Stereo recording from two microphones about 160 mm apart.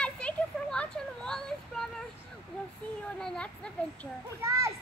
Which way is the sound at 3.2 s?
5° left (ahead or behind).